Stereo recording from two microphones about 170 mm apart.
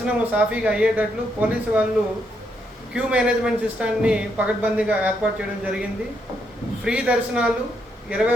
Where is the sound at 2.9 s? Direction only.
5° right (ahead or behind).